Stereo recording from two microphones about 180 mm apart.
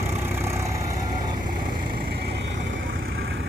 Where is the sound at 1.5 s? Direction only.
55° right (ahead or behind).